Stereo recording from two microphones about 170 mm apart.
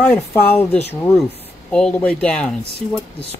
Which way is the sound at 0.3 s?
15° left (ahead or behind).